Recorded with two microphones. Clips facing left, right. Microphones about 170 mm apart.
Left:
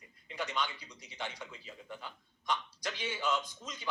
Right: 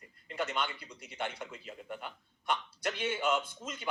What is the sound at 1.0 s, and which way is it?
A man's voice, 60° right (ahead or behind).